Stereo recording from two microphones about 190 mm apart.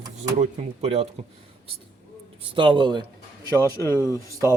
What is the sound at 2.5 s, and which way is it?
A man's voice, 25° right (ahead or behind).